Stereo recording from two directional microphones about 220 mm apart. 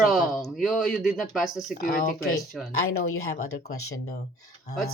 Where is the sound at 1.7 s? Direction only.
40° left (ahead or behind).